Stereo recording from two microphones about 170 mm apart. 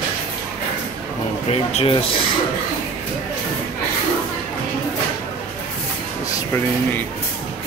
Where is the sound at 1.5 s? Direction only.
35° left (ahead or behind).